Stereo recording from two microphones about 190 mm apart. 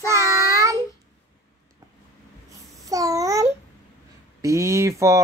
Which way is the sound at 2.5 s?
15° right (ahead or behind).